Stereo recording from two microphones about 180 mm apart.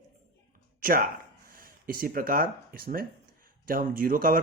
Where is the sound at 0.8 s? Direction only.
55° right (ahead or behind).